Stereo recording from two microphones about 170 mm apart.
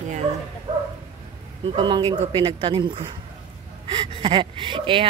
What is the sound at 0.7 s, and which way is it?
Bow-wow, 40° right (ahead or behind).